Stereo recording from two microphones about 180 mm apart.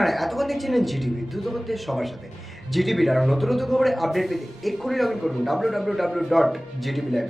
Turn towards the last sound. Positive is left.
turn(degrees=0)  # may be behind; listen again after turning